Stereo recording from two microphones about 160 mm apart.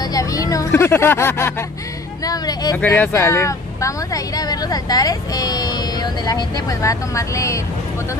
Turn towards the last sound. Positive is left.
turn(degrees=20)  # may be behind; listen again after turning